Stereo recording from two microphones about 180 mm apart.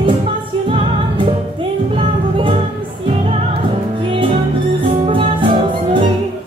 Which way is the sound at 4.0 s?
30° right (ahead or behind).